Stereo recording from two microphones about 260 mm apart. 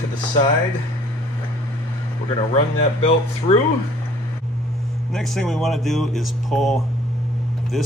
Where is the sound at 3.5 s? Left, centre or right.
Left.